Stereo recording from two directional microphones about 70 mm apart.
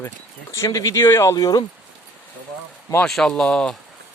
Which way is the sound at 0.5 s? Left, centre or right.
Left.